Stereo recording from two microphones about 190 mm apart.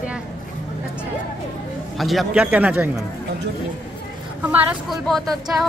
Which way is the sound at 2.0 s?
Centre (ahead or behind).